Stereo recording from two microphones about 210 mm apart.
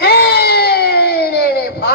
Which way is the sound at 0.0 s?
50° left (ahead or behind).